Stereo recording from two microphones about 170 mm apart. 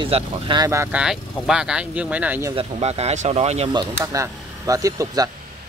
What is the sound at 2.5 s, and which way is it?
Speech, 40° right (ahead or behind).